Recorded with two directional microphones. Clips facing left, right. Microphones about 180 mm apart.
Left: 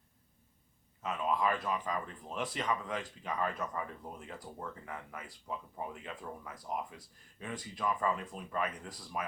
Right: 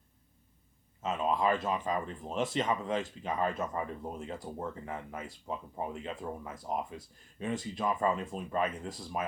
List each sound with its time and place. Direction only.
1.0 s speech: 25° right (ahead or behind)